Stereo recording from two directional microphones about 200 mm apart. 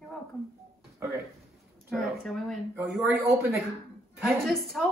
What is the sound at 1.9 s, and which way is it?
A woman's voice, centre (ahead or behind).